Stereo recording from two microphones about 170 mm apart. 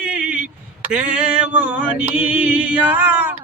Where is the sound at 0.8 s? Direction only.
5° right (ahead or behind).